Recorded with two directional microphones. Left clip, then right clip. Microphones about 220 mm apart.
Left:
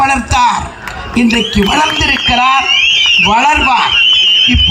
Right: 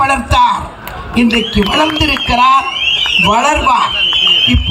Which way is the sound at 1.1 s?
50° right (ahead or behind).